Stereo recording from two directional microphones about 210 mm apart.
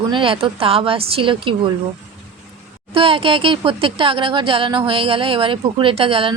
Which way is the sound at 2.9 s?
25° right (ahead or behind).